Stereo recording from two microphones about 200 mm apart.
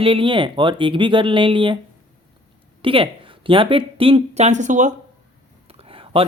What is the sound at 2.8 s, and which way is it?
Speech, 25° right (ahead or behind).